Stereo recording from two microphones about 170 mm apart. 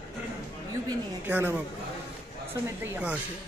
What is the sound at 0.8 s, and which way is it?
Speech, 10° right (ahead or behind).